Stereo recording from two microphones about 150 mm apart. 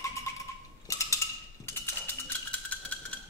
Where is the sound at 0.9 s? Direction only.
20° left (ahead or behind).